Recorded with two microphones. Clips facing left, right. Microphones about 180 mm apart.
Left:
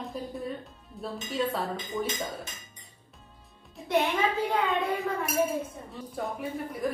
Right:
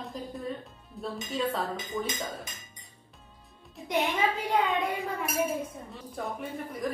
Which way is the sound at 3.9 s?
15° right (ahead or behind).